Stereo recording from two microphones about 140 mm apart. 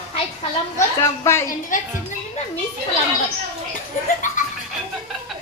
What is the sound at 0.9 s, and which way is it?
Speech, 20° left (ahead or behind).